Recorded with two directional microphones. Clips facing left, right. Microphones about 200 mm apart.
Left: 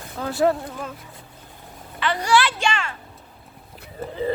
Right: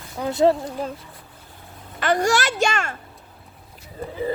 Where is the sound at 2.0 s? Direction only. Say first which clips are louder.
Right 1 dB; 45° right (ahead or behind).